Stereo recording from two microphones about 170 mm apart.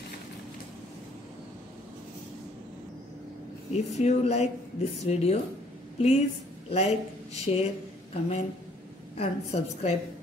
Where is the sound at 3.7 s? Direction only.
40° left (ahead or behind).